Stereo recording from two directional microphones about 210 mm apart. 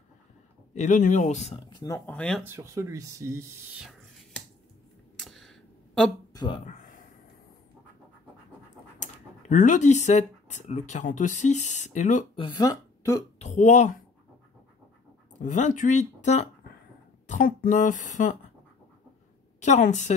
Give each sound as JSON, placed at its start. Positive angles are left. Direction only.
{"t": 0.7, "sound": "speech", "side_deg": 35}
{"t": 1.7, "sound": "speech", "side_deg": 15}
{"t": 2.4, "sound": "speech", "side_deg": -15}
{"t": 5.2, "sound": "a sound", "side_deg": 0}
{"t": 6.3, "sound": "speech", "side_deg": 20}
{"t": 6.6, "sound": "a sound", "side_deg": 35}
{"t": 9.0, "sound": "speech", "side_deg": 35}
{"t": 12.4, "sound": "speech", "side_deg": 20}
{"t": 13.4, "sound": "speech", "side_deg": 35}
{"t": 15.4, "sound": "speech", "side_deg": 35}
{"t": 19.6, "sound": "speech", "side_deg": 35}